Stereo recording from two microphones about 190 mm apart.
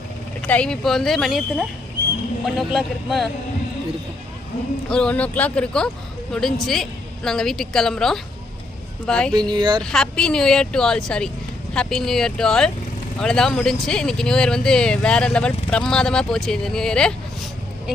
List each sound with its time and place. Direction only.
0.4 s speech: 5° left (ahead or behind)
4.9 s speech: 5° left (ahead or behind)
9.3 s speech: 20° right (ahead or behind)
9.8 s speech: 5° left (ahead or behind)